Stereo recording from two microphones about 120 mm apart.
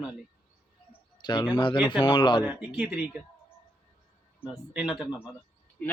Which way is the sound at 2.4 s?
15° right (ahead or behind).